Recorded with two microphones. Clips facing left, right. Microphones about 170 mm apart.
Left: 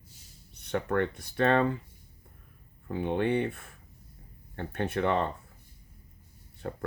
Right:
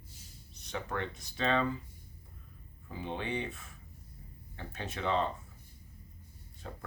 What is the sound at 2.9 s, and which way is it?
Speech, 60° left (ahead or behind).